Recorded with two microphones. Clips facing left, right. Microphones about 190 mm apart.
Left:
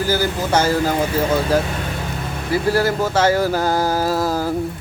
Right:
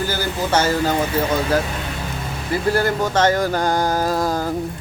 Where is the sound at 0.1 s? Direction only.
10° left (ahead or behind).